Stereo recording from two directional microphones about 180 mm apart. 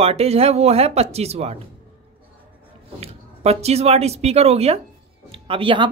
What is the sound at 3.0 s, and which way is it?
Speech, 35° right (ahead or behind).